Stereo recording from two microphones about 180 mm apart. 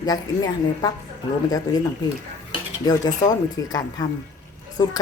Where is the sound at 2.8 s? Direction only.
20° left (ahead or behind).